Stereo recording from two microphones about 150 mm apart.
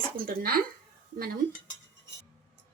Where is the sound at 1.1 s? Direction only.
80° right.